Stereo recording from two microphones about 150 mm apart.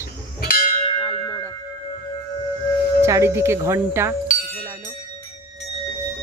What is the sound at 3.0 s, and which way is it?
Speech, 20° right (ahead or behind).